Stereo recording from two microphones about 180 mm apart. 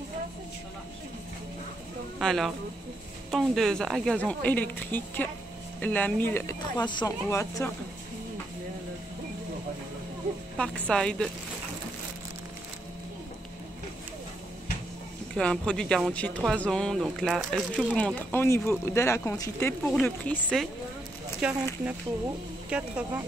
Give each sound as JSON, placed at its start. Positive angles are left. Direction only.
{"t": 2.1, "sound": "speech", "side_deg": 0}
{"t": 6.8, "sound": "speech", "side_deg": 25}
{"t": 10.6, "sound": "speech", "side_deg": 5}
{"t": 15.3, "sound": "speech", "side_deg": 5}
{"t": 22.7, "sound": "speech", "side_deg": -10}